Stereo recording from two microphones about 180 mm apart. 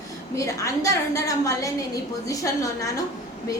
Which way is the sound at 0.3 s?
15° left (ahead or behind).